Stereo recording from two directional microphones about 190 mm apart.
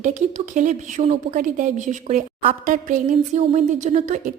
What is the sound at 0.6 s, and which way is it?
A woman's voice, 40° right (ahead or behind).